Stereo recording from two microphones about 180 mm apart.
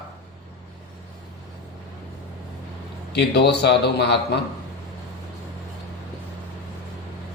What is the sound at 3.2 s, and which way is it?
Speech, 70° left (ahead or behind).